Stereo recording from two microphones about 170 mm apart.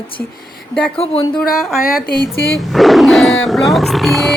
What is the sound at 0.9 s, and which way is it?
Speech, 35° left (ahead or behind).